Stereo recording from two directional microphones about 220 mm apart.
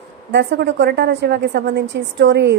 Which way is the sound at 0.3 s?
50° right (ahead or behind).